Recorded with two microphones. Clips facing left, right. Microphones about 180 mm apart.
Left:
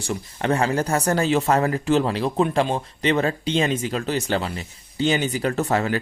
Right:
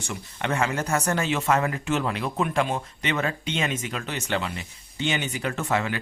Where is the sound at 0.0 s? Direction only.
35° left (ahead or behind).